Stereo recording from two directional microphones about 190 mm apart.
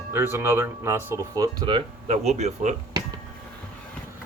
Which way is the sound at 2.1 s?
35° right (ahead or behind).